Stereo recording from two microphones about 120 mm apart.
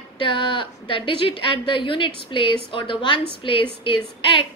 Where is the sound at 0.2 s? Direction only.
45° left (ahead or behind).